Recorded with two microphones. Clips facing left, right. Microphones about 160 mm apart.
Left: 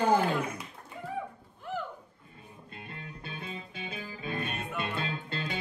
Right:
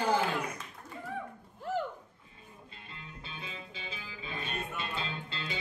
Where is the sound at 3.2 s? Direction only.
55° left (ahead or behind).